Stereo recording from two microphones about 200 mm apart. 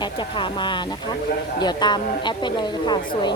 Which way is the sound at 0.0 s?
25° left (ahead or behind).